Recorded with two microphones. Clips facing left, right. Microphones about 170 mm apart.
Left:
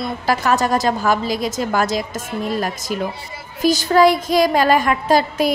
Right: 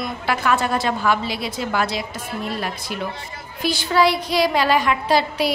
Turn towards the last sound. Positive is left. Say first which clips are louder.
# left 3 dB
turn(degrees=45)  # may be behind; listen again after turning